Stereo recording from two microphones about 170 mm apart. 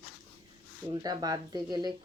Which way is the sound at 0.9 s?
25° right (ahead or behind).